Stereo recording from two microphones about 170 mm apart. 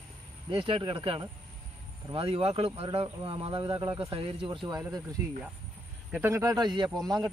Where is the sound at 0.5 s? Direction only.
30° right (ahead or behind).